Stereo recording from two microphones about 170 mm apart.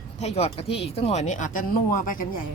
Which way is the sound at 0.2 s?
40° left (ahead or behind).